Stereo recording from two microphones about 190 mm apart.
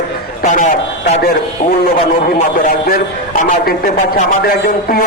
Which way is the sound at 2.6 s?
50° left (ahead or behind).